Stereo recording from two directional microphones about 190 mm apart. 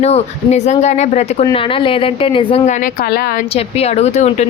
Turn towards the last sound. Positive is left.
turn(degrees=35)  # may be behind; listen again after turning